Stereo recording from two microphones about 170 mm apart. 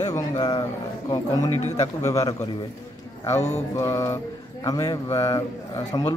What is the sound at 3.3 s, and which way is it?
Speech, 40° left (ahead or behind).